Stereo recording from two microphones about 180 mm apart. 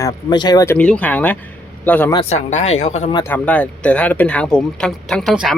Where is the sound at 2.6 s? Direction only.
35° left (ahead or behind).